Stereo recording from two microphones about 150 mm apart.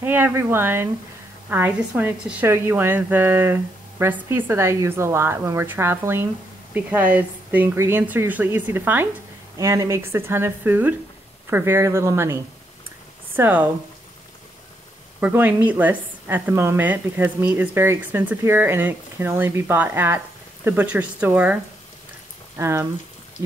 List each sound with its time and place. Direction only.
0.0 s a woman's voice: 15° right (ahead or behind)
13.4 s a woman's voice: 10° right (ahead or behind)
15.1 s a woman's voice: 10° right (ahead or behind)
22.6 s a woman's voice: 20° right (ahead or behind)